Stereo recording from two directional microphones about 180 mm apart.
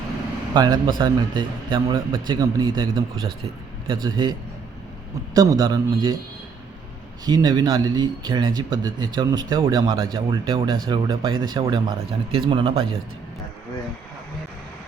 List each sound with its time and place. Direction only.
0.5 s speech: 25° right (ahead or behind)
7.3 s speech: 20° right (ahead or behind)